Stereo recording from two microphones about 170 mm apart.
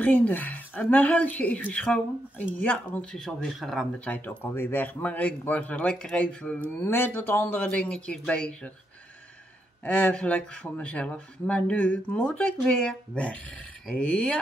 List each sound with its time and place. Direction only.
0.0 s speech: 10° left (ahead or behind)
9.8 s speech: 5° left (ahead or behind)